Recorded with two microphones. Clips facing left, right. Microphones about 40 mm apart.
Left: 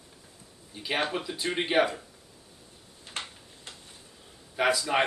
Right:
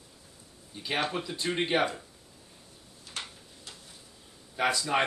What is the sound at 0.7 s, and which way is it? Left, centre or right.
Speech, centre.